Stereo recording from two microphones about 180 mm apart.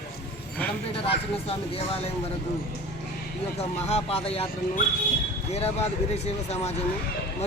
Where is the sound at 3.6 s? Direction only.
35° left (ahead or behind).